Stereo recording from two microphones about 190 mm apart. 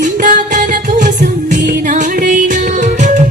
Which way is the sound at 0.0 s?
40° right (ahead or behind).